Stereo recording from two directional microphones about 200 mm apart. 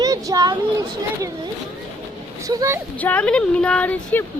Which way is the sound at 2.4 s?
15° right (ahead or behind).